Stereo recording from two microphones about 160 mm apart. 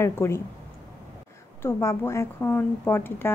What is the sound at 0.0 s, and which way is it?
Speech, 15° left (ahead or behind).